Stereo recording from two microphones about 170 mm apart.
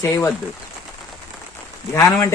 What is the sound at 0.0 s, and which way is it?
Speech, 15° left (ahead or behind).